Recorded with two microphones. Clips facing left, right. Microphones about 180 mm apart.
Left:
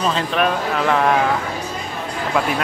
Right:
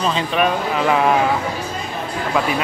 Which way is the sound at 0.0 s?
Centre (ahead or behind).